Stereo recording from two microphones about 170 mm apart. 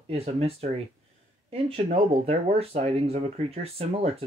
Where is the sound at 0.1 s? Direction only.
35° right (ahead or behind).